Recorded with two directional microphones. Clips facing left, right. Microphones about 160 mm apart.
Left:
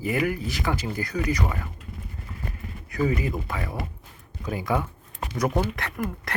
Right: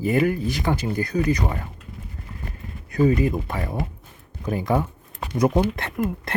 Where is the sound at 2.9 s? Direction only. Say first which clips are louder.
Right 6 dB; 30° right (ahead or behind).